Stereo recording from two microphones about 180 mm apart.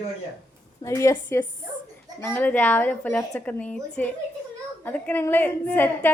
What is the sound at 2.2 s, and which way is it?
A woman's voice, 10° left (ahead or behind).